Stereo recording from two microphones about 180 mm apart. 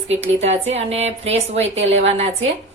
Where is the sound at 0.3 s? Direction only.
35° right (ahead or behind).